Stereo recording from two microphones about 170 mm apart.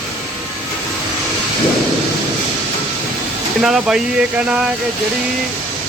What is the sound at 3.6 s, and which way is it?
Speech, 5° right (ahead or behind).